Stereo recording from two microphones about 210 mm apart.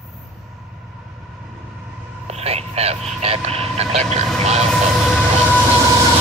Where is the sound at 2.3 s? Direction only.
30° right (ahead or behind).